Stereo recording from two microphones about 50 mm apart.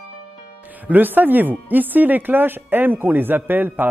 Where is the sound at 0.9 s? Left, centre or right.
Right.